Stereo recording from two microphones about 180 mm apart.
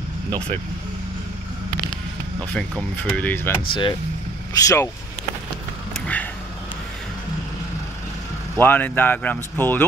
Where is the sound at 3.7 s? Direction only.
25° left (ahead or behind).